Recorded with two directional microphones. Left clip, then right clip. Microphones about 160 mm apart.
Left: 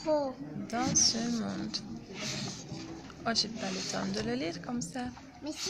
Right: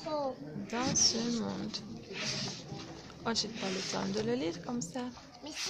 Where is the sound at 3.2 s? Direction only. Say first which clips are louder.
Left 3 dB; 20° right (ahead or behind).